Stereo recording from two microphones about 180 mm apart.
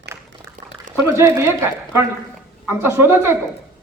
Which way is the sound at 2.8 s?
15° right (ahead or behind).